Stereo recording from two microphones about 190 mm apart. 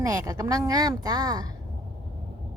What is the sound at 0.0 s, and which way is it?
A woman's voice, 20° right (ahead or behind).